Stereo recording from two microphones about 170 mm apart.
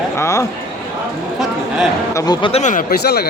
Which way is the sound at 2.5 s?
45° left (ahead or behind).